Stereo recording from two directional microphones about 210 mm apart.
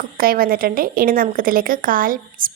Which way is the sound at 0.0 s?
45° right (ahead or behind).